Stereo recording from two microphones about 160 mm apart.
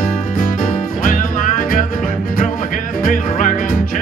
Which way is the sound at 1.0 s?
55° left (ahead or behind).